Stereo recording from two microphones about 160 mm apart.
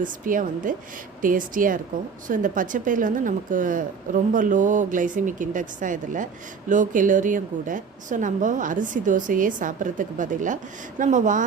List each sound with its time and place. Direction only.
0.0 s a woman's voice: 55° right (ahead or behind)